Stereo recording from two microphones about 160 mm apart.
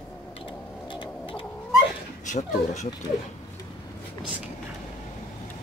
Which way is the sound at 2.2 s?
50° left (ahead or behind).